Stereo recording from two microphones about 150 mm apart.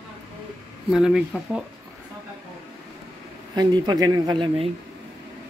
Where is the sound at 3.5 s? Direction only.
25° right (ahead or behind).